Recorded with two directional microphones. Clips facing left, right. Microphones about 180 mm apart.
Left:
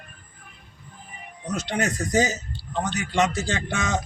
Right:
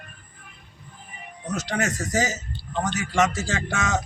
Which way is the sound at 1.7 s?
20° left (ahead or behind).